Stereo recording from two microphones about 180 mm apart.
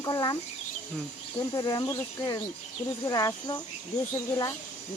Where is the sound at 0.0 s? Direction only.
20° left (ahead or behind).